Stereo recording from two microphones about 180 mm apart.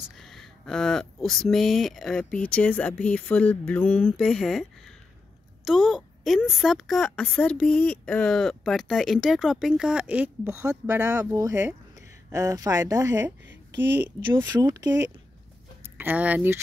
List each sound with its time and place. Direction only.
0.1 s speech: centre (ahead or behind); by 13.3 s 20° right (ahead or behind)
14.3 s speech: 20° right (ahead or behind)
16.0 s speech: 10° right (ahead or behind)